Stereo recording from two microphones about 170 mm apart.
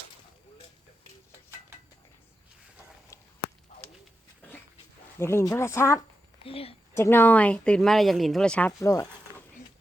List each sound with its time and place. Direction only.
5.2 s speech: 15° left (ahead or behind)
6.4 s a woman's voice: 35° left (ahead or behind)
6.9 s speech: 15° left (ahead or behind)
8.8 s speech: 20° left (ahead or behind)